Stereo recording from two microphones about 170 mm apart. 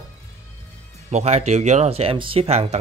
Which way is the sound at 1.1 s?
40° right (ahead or behind).